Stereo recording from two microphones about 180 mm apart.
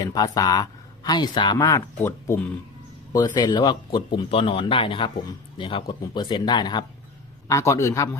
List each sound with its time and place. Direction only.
0.0 s a man's voice: 20° left (ahead or behind)